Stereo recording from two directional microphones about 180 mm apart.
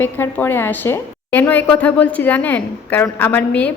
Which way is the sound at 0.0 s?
10° left (ahead or behind).